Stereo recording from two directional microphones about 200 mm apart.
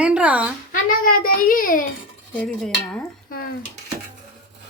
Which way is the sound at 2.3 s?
5° left (ahead or behind).